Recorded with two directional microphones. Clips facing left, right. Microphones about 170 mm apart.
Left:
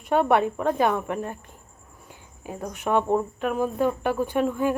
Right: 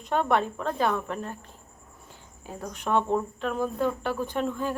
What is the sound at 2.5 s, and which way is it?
A woman's voice, 15° left (ahead or behind).